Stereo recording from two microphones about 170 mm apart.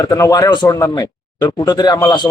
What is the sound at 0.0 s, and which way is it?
Speech, 20° left (ahead or behind).